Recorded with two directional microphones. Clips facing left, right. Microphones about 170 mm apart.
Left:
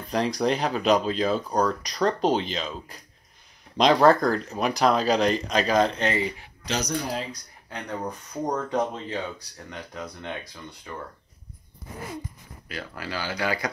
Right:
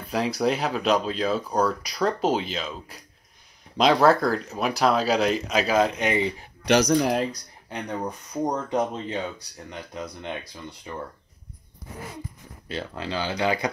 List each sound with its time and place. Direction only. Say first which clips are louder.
0.0 s speech: even; 5° right (ahead or behind)
6.6 s speech: right 9 dB; 65° right (ahead or behind)
8.5 s speech: even; 20° right (ahead or behind)
10.9 s speech: right 2 dB; 20° right (ahead or behind)
12.6 s speech: right 4 dB; 25° right (ahead or behind)